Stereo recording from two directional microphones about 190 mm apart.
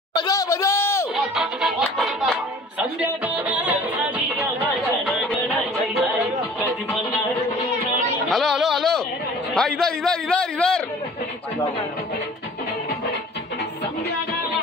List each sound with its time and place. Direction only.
0.1 s a sound: 20° left (ahead or behind)
1.1 s music: centre (ahead or behind)
3.4 s music: 10° right (ahead or behind)
5.0 s music: centre (ahead or behind)
8.3 s a sound: centre (ahead or behind)
9.5 s a man's voice: 5° left (ahead or behind)